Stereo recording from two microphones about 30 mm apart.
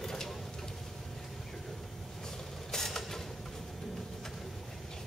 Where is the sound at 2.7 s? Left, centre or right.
Centre.